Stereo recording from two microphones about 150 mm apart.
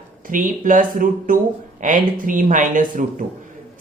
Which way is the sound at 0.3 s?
65° right (ahead or behind).